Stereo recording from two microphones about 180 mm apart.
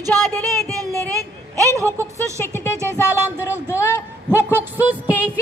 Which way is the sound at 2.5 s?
15° left (ahead or behind).